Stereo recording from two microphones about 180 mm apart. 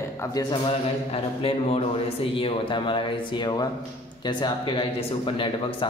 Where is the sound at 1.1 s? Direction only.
35° left (ahead or behind).